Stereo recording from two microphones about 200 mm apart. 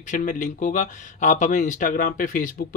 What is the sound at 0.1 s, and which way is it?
Speech, 40° left (ahead or behind).